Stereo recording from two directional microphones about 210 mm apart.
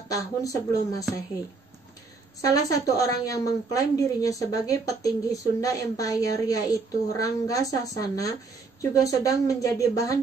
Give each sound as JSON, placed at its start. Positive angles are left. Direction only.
{"t": 0.1, "sound": "a woman's voice", "side_deg": 15}
{"t": 2.4, "sound": "a woman's voice", "side_deg": 15}